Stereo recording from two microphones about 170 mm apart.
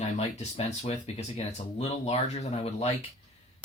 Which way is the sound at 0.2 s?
40° left (ahead or behind).